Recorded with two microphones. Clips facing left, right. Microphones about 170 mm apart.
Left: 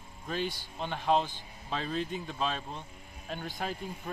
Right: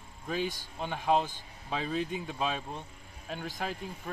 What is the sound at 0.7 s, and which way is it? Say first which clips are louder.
A man's voice: even; 10° right (ahead or behind).